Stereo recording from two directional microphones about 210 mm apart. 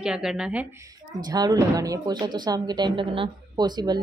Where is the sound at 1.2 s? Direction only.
20° right (ahead or behind).